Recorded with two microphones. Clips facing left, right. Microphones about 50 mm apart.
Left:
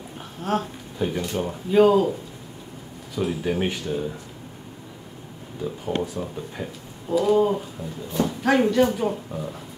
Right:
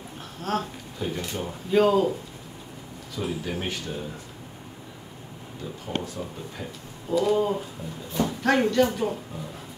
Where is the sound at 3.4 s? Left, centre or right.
Centre.